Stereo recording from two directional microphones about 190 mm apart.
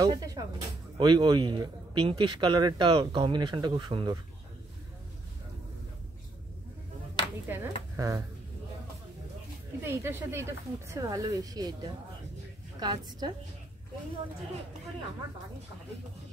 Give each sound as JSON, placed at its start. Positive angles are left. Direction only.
{"t": 0.0, "sound": "speech", "side_deg": -20}
{"t": 7.4, "sound": "a sound", "side_deg": -10}
{"t": 9.8, "sound": "speech", "side_deg": -10}